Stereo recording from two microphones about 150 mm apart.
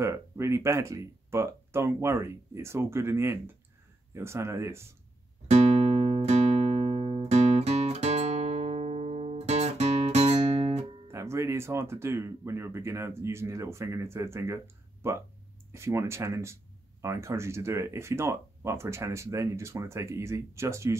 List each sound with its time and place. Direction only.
0.0 s speech: 20° right (ahead or behind)
5.5 s music: 45° right (ahead or behind)
11.1 s speech: 20° right (ahead or behind)